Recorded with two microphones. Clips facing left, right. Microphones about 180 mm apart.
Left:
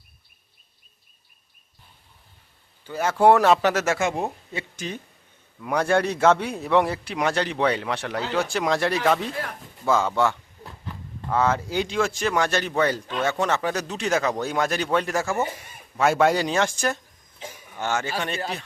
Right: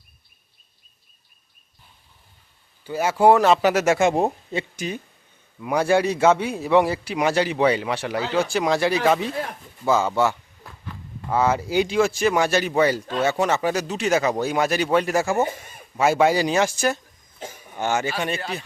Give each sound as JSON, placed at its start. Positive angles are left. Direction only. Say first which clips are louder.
{"t": 2.8, "sound": "speech", "louder": "right 1 dB", "side_deg": -10}
{"t": 3.9, "sound": "speech", "louder": "right 6 dB", "side_deg": -25}
{"t": 5.5, "sound": "a man's voice", "louder": "right 2 dB", "side_deg": -5}